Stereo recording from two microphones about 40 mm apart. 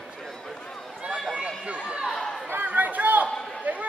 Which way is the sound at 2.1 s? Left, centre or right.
Centre.